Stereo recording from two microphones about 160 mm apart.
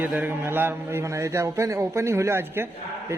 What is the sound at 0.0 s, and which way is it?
A man's voice, 10° right (ahead or behind).